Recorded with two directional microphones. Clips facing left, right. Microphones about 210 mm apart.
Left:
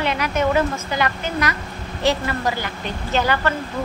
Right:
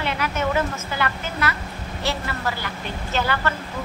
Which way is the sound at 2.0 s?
15° left (ahead or behind).